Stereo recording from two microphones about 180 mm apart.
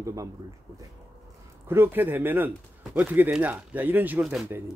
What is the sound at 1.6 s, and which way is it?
Speech, 10° right (ahead or behind).